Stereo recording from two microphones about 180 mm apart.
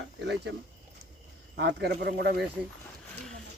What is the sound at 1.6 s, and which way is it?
Speech, 70° right (ahead or behind).